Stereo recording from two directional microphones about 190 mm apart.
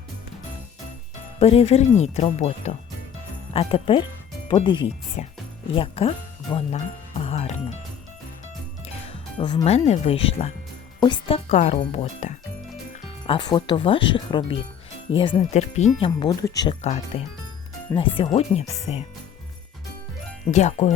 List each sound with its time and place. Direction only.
1.4 s speech: 35° left (ahead or behind)
6.7 s music: 35° left (ahead or behind)
9.0 s music: 25° left (ahead or behind)
9.6 s speech: 35° left (ahead or behind)
13.2 s speech: 25° left (ahead or behind)
16.0 s speech: 25° left (ahead or behind)
16.8 s speech: 35° left (ahead or behind)
20.4 s speech: 40° left (ahead or behind)